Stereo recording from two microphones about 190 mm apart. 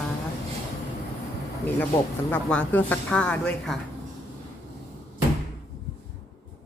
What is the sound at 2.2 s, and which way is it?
Speech, 10° left (ahead or behind).